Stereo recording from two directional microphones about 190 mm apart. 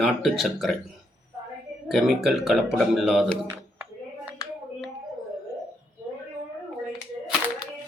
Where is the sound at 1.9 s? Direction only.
Centre (ahead or behind).